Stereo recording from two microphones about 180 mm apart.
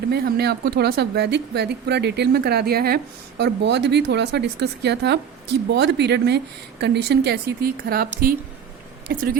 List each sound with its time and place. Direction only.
0.1 s speech: 60° right (ahead or behind)
9.0 s speech: 55° right (ahead or behind)